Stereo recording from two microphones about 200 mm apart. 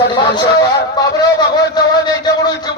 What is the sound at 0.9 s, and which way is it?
A man's voice, 20° left (ahead or behind).